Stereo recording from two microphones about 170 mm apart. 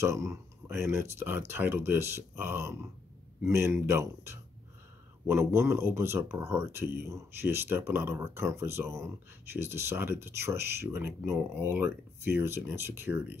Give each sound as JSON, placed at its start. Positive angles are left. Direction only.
{"t": 0.0, "sound": "speech", "side_deg": -15}